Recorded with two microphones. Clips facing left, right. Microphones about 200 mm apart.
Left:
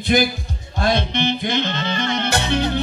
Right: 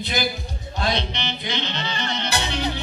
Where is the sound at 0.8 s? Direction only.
50° left (ahead or behind).